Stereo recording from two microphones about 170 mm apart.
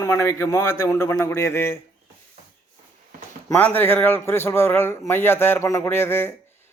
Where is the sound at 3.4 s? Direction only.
10° left (ahead or behind).